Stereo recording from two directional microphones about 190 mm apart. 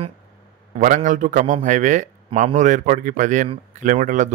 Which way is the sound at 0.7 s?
40° right (ahead or behind).